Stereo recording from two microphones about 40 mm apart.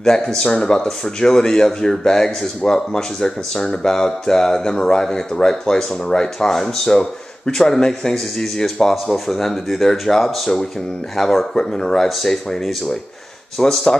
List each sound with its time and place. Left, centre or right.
0.0 s speech: centre
8.9 s speech: centre